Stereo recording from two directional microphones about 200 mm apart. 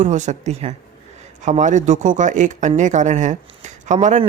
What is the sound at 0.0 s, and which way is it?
Speech, 35° right (ahead or behind).